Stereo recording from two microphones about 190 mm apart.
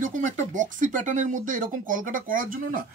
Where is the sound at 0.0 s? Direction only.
40° right (ahead or behind).